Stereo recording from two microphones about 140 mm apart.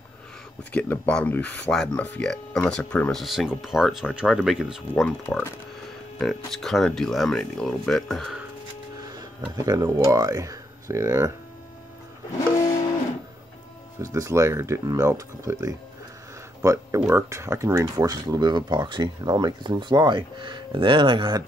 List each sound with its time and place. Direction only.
0.7 s speech: 10° left (ahead or behind)
3.1 s speech: centre (ahead or behind)
5.3 s speech: 15° left (ahead or behind)
6.1 s speech: centre (ahead or behind)
9.1 s speech: 25° right (ahead or behind)
14.0 s speech: 20° right (ahead or behind)